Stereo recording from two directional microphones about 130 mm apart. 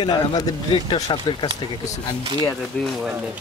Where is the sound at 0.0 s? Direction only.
30° left (ahead or behind).